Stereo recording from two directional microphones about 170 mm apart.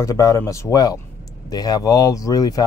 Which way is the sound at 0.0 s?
20° left (ahead or behind).